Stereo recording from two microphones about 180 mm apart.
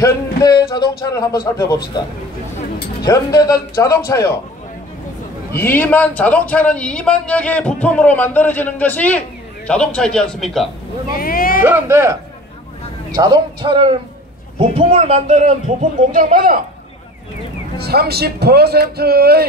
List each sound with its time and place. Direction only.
0.0 s speech: 20° left (ahead or behind)
3.1 s speech: 20° left (ahead or behind)
5.5 s a man's voice: 10° left (ahead or behind)
11.1 s speech: 55° left (ahead or behind)
11.6 s a man's voice: 15° right (ahead or behind); by 16.6 s 50° right (ahead or behind)
17.7 s a man's voice: 60° right (ahead or behind)